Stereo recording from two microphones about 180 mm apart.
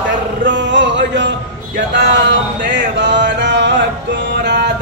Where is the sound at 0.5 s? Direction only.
90° right; by 3.7 s 70° right (ahead or behind).